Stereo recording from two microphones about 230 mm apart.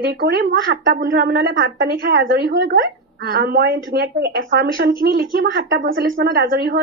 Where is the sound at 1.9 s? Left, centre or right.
Right.